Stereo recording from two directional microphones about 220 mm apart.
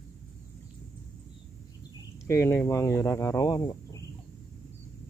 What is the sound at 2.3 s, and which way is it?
Speech, 10° left (ahead or behind).